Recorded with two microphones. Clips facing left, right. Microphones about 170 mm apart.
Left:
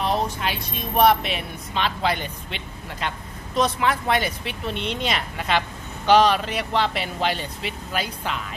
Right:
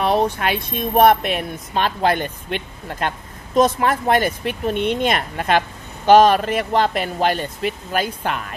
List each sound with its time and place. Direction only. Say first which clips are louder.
0.0 s a woman's voice: right 6 dB; 60° right (ahead or behind)